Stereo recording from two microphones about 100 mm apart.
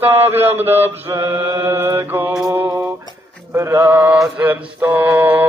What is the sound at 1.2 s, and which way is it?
A man's voice, 20° right (ahead or behind).